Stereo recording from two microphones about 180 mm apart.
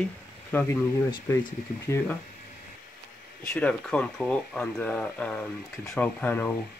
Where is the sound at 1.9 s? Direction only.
15° left (ahead or behind).